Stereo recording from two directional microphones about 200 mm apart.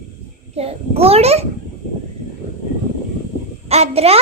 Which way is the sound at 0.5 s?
30° right (ahead or behind).